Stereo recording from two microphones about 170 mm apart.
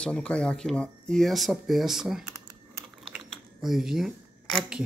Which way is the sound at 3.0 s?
Centre (ahead or behind).